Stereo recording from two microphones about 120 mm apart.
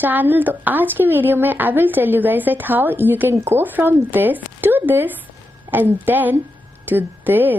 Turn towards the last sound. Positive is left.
turn(degrees=-15)  # may be behind; listen again after turning